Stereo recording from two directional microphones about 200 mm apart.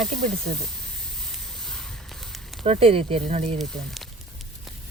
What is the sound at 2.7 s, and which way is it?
Speech, 30° right (ahead or behind).